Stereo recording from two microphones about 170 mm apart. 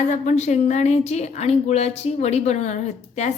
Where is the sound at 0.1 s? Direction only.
45° left (ahead or behind).